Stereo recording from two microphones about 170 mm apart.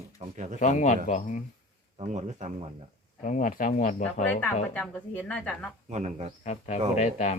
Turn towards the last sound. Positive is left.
turn(degrees=40)  # may be behind; listen again after turning